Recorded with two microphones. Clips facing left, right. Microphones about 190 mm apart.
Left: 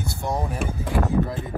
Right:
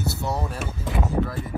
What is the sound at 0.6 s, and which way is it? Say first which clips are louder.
Speech: left 3 dB; 5° right (ahead or behind).